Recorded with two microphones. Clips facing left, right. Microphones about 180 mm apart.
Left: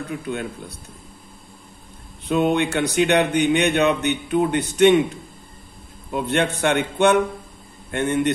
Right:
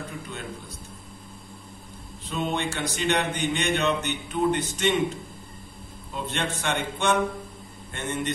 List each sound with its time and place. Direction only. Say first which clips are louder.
0.3 s speech: left 9 dB; 60° left (ahead or behind)
2.2 s speech: left 9 dB; 65° left (ahead or behind)